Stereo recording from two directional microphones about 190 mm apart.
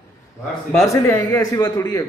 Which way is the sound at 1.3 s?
20° left (ahead or behind).